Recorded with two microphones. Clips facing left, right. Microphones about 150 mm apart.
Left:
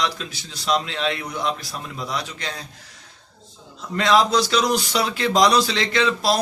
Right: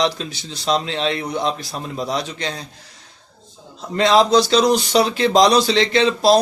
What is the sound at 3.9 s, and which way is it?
A man's voice, 25° right (ahead or behind).